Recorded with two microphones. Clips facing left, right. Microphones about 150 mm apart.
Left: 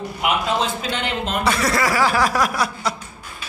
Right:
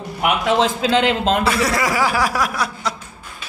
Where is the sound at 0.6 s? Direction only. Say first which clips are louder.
Right 7 dB; 90° right.